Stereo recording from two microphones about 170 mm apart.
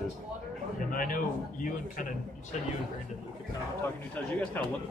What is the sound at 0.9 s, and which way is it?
Speech, 55° left (ahead or behind).